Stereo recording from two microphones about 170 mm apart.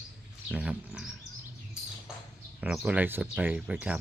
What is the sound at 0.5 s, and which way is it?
Speech, 5° right (ahead or behind).